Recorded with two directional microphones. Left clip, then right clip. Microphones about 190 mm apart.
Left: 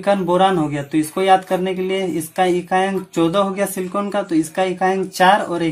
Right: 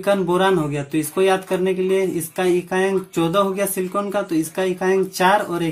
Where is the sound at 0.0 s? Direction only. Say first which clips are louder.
Left 2 dB; 35° left (ahead or behind).